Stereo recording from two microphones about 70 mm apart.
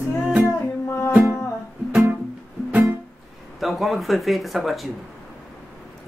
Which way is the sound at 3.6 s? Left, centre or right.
Centre.